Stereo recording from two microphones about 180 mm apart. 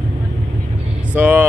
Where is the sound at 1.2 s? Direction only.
10° right (ahead or behind).